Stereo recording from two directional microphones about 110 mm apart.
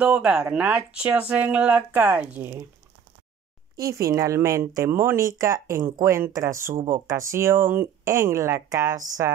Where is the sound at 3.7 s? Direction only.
30° right (ahead or behind).